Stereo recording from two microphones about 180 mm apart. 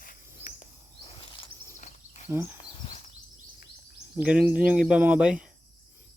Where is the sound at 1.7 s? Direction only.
40° left (ahead or behind).